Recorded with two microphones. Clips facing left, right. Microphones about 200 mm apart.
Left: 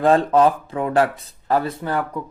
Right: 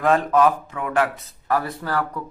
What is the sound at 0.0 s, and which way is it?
Speech, 30° left (ahead or behind).